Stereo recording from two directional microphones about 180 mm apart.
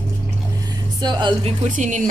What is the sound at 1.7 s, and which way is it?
Speech, 45° right (ahead or behind).